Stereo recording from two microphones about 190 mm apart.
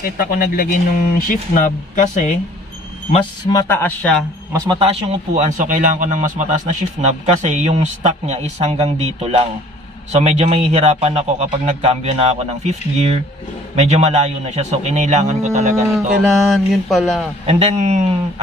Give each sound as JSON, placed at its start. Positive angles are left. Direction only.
{"t": 0.0, "sound": "speech", "side_deg": 50}
{"t": 3.5, "sound": "speech", "side_deg": 10}
{"t": 4.7, "sound": "a man's voice", "side_deg": -35}
{"t": 15.9, "sound": "speech", "side_deg": 0}
{"t": 17.5, "sound": "a man's voice", "side_deg": -35}